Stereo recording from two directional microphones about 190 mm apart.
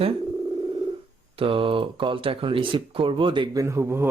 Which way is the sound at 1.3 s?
30° right (ahead or behind).